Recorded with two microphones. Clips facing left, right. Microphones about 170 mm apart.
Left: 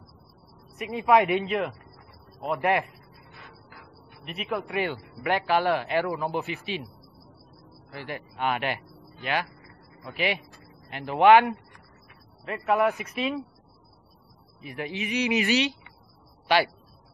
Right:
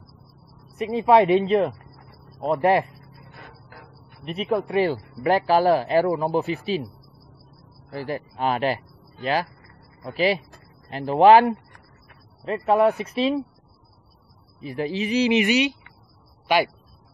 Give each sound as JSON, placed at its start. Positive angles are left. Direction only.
{"t": 0.7, "sound": "speech", "side_deg": -30}
{"t": 3.2, "sound": "a sound", "side_deg": -50}
{"t": 4.2, "sound": "speech", "side_deg": -35}
{"t": 7.9, "sound": "speech", "side_deg": -35}
{"t": 14.6, "sound": "speech", "side_deg": -35}
{"t": 15.3, "sound": "speech", "side_deg": -15}